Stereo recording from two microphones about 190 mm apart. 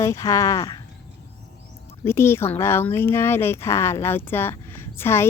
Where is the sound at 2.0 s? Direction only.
15° left (ahead or behind).